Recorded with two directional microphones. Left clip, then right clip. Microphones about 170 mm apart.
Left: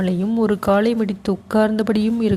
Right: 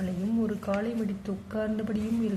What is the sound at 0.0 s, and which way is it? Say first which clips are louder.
A woman's voice: left 11 dB; 40° left (ahead or behind).